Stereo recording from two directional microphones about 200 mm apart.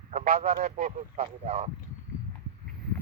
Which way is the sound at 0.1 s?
35° right (ahead or behind).